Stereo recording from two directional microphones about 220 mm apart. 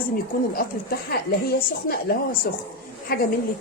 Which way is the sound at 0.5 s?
45° left (ahead or behind).